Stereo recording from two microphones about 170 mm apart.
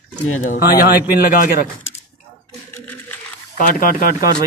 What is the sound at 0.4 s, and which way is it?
Speech, 55° left (ahead or behind).